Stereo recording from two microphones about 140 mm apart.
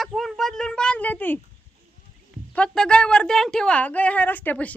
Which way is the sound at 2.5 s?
5° left (ahead or behind).